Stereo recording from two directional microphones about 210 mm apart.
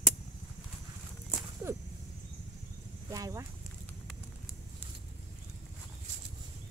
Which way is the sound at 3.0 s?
15° right (ahead or behind).